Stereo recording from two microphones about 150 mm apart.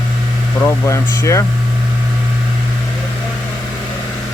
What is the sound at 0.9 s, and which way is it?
Speech, 20° left (ahead or behind).